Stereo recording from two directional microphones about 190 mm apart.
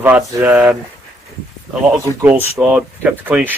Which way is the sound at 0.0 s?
10° right (ahead or behind).